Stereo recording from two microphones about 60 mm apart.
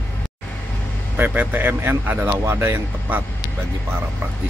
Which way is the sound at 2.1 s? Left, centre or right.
Right.